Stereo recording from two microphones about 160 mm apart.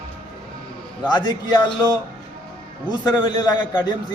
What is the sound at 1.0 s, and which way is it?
Speech, 25° left (ahead or behind).